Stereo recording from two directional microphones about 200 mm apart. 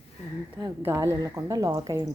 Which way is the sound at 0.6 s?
15° right (ahead or behind).